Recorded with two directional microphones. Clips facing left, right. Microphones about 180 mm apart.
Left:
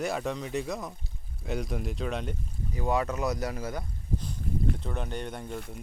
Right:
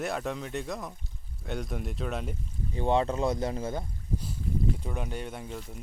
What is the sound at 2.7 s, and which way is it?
Speech, 30° right (ahead or behind).